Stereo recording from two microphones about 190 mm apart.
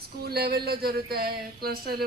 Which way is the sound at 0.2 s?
55° right (ahead or behind).